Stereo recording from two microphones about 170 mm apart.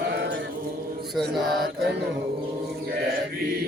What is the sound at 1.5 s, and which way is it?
Music, 65° right (ahead or behind).